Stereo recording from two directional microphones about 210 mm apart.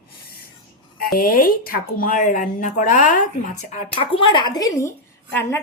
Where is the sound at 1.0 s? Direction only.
45° left (ahead or behind).